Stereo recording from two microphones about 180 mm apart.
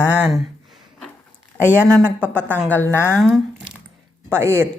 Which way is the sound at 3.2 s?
Centre (ahead or behind).